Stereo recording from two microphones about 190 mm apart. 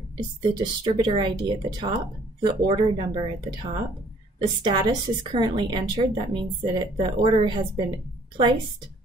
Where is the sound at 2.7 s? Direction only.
25° right (ahead or behind).